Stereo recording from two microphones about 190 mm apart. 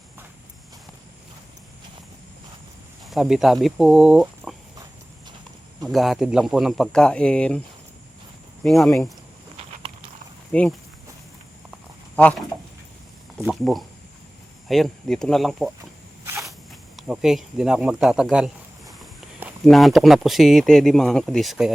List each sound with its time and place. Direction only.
3.0 s speech: centre (ahead or behind)
5.9 s speech: centre (ahead or behind)
8.6 s speech: centre (ahead or behind)
10.5 s speech: 5° left (ahead or behind)
13.4 s speech: centre (ahead or behind)
17.0 s speech: 5° right (ahead or behind)